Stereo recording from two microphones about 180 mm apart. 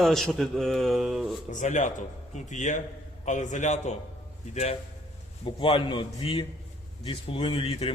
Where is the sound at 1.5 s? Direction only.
45° left (ahead or behind).